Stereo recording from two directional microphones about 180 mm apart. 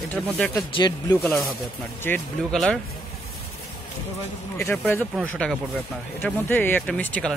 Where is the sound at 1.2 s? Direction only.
Centre (ahead or behind).